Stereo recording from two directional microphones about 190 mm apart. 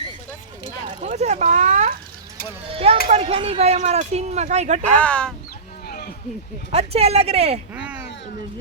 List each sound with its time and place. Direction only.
1.0 s speech: 35° right (ahead or behind)
2.6 s speech: 30° right (ahead or behind)
4.9 s speech: 5° left (ahead or behind)
5.8 s a sound: 50° left (ahead or behind)
6.7 s speech: 30° right (ahead or behind)
7.7 s a sound: 5° right (ahead or behind)